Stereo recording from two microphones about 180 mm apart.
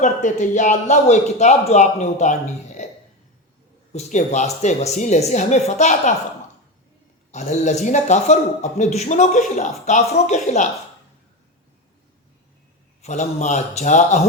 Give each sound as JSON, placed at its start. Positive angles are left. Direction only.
{"t": 0.0, "sound": "speech", "side_deg": 40}
{"t": 3.9, "sound": "speech", "side_deg": 40}
{"t": 7.3, "sound": "a man's voice", "side_deg": 40}
{"t": 13.0, "sound": "speech", "side_deg": 40}